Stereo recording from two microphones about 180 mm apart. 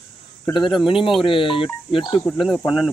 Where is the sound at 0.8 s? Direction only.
30° left (ahead or behind).